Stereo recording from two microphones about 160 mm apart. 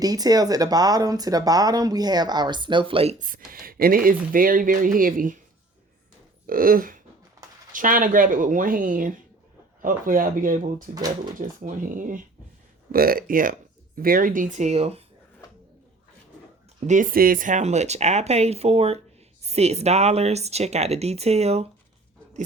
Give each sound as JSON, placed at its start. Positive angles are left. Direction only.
{"t": 0.0, "sound": "speech", "side_deg": -25}
{"t": 3.2, "sound": "speech", "side_deg": -60}
{"t": 6.5, "sound": "speech", "side_deg": -60}
{"t": 16.8, "sound": "speech", "side_deg": -55}